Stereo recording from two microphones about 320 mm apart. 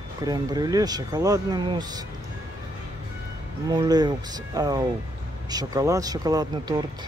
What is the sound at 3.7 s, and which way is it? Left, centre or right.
Speech, centre.